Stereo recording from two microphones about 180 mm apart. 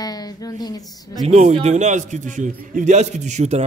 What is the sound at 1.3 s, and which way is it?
A man's voice, 40° right (ahead or behind).